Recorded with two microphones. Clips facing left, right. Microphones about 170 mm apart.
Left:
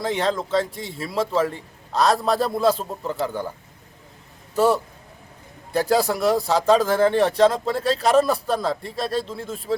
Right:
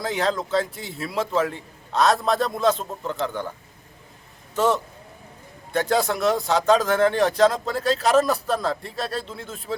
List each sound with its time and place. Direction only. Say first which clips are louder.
0.1 s a man's voice: left 1 dB; centre (ahead or behind)
0.6 s speech: left 2 dB; 30° left (ahead or behind)
1.3 s a man's voice: left 1 dB; 5° left (ahead or behind)
4.5 s a man's voice: left 2 dB; 10° left (ahead or behind)